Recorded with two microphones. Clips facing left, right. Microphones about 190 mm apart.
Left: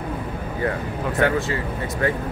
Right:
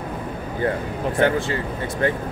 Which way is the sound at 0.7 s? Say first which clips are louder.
Right 2 dB; 30° right (ahead or behind).